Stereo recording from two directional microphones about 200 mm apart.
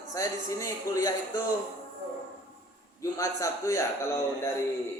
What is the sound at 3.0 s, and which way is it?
Speech, 15° left (ahead or behind).